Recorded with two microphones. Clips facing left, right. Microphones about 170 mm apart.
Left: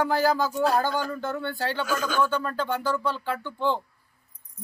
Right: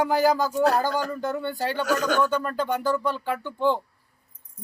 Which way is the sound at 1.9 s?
75° right (ahead or behind).